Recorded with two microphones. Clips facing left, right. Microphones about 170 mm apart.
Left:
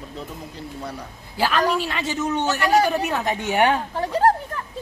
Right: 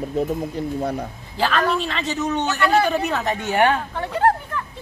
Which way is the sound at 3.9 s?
35° left (ahead or behind).